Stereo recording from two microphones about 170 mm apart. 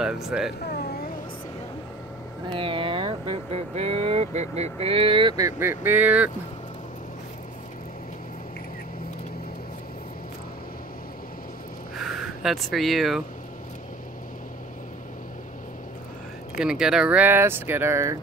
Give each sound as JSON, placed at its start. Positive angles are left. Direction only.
{"t": 0.0, "sound": "speech", "side_deg": -5}
{"t": 0.7, "sound": "a sound", "side_deg": 70}
{"t": 2.5, "sound": "speech", "side_deg": -30}
{"t": 12.0, "sound": "speech", "side_deg": 0}
{"t": 16.5, "sound": "speech", "side_deg": -5}